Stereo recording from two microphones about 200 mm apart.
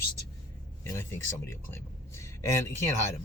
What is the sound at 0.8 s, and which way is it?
Speech, 15° left (ahead or behind).